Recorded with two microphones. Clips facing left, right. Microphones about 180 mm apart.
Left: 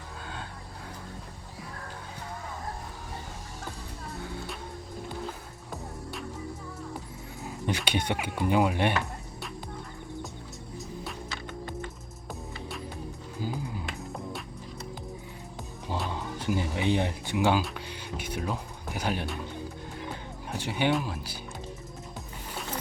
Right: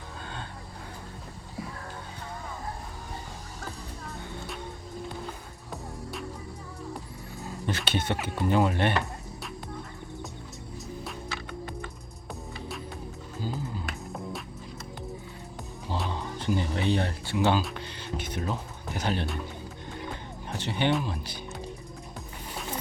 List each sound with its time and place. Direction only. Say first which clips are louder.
5.7 s music: right 1 dB; centre (ahead or behind)
7.4 s speech: left 1 dB; 15° left (ahead or behind)
12.3 s music: right 1 dB; centre (ahead or behind)
13.4 s music: even; 15° left (ahead or behind)
16.0 s music: right 1 dB; 5° left (ahead or behind)
17.6 s speech: even; 10° left (ahead or behind)
20.6 s speech: even; 10° left (ahead or behind)